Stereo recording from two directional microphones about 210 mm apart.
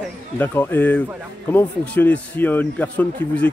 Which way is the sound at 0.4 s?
10° left (ahead or behind).